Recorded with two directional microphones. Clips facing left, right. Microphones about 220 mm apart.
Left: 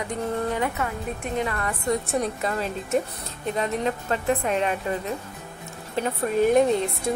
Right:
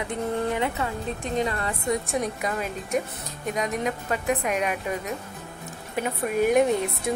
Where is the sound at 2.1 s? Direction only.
15° right (ahead or behind).